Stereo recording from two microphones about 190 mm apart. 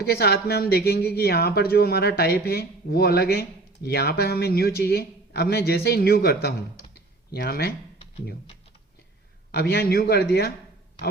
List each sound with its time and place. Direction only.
0.0 s speech: 55° left (ahead or behind)
9.5 s speech: 55° left (ahead or behind)